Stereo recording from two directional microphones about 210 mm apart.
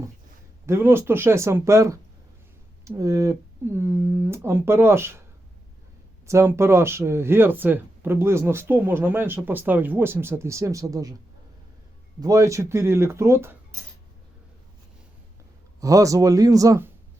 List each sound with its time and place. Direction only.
0.7 s speech: 10° right (ahead or behind)
6.2 s speech: 15° right (ahead or behind)
12.2 s speech: 15° right (ahead or behind)
15.8 s speech: 15° right (ahead or behind)